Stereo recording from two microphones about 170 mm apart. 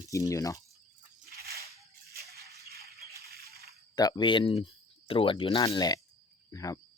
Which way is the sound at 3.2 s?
65° right (ahead or behind).